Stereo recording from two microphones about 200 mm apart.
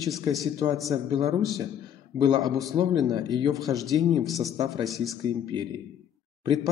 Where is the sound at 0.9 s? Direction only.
20° right (ahead or behind).